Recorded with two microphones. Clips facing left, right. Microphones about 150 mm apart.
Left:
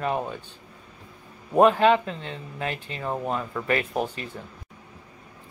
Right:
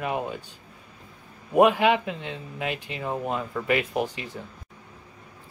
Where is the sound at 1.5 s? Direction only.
10° right (ahead or behind).